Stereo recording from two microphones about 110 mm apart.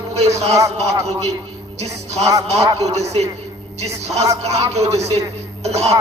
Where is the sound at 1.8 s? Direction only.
80° right.